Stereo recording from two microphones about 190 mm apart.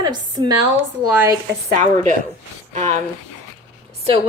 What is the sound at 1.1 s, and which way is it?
Speech, 10° right (ahead or behind).